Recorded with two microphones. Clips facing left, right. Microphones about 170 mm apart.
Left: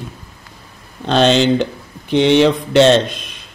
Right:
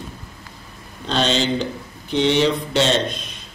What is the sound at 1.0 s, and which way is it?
Speech, 65° left (ahead or behind).